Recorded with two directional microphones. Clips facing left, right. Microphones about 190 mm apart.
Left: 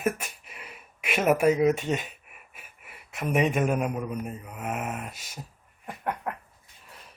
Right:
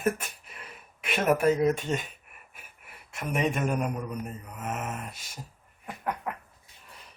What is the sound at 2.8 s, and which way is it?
Speech, 5° left (ahead or behind).